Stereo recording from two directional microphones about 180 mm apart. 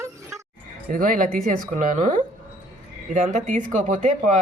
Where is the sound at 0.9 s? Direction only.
50° right (ahead or behind).